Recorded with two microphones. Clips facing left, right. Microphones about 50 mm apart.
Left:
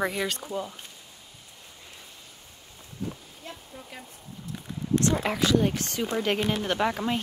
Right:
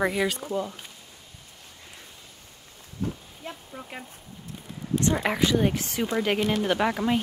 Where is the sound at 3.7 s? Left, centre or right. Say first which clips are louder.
Right 4 dB; right.